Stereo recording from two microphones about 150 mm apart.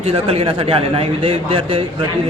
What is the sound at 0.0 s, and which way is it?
Speech, 40° right (ahead or behind).